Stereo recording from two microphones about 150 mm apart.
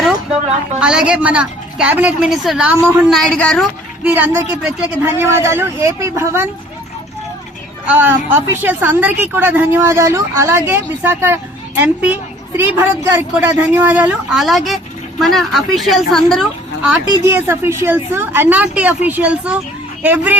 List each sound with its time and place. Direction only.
0.8 s a woman's voice: 5° right (ahead or behind)
3.1 s speech: centre (ahead or behind)
4.0 s a woman's voice: 10° right (ahead or behind)
7.9 s a woman's voice: 15° right (ahead or behind)
17.1 s a woman's voice: 15° right (ahead or behind)